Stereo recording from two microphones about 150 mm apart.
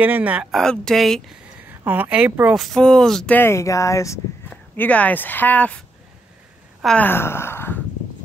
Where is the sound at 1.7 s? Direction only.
10° right (ahead or behind); by 5.8 s 10° left (ahead or behind).